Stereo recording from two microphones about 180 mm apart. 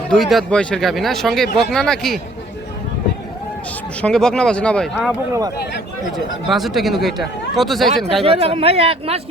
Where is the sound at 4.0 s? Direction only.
5° left (ahead or behind).